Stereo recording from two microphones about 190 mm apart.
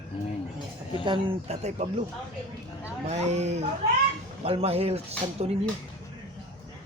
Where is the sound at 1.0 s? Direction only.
30° right (ahead or behind).